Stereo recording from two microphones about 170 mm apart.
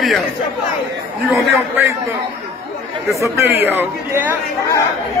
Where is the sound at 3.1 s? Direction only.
15° right (ahead or behind).